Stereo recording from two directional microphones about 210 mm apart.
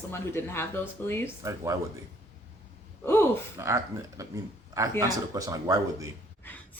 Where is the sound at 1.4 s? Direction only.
15° right (ahead or behind).